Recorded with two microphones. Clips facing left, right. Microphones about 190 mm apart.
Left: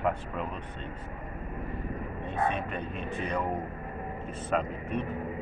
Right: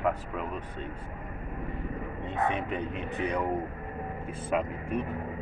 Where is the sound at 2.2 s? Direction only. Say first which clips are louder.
Even; 20° right (ahead or behind).